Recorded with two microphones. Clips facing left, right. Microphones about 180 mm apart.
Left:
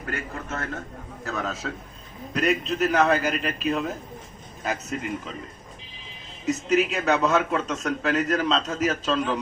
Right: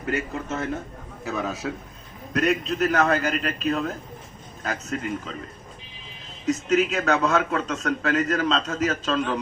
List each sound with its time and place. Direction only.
0.0 s a man's voice: 20° right (ahead or behind)
2.3 s a man's voice: centre (ahead or behind)
6.5 s a man's voice: 5° left (ahead or behind)